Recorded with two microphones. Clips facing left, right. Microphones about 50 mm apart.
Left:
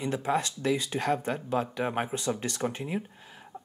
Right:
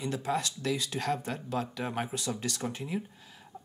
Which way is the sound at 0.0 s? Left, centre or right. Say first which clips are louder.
Left 3 dB; left.